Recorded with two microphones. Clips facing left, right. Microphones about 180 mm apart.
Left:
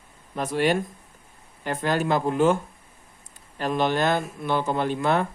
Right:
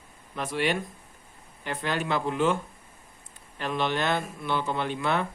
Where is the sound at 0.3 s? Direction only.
40° left (ahead or behind).